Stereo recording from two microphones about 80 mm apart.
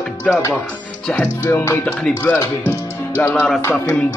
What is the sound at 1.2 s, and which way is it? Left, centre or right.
Music, left.